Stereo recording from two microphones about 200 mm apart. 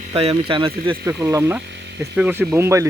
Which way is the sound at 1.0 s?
15° right (ahead or behind).